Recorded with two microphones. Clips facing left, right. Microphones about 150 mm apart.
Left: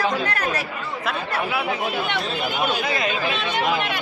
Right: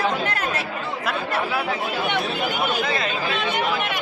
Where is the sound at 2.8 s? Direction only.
15° left (ahead or behind).